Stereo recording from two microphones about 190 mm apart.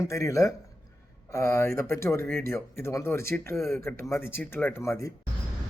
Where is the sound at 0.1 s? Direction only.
15° left (ahead or behind).